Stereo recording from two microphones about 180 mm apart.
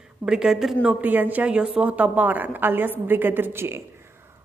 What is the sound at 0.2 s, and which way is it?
A woman's voice, 5° right (ahead or behind).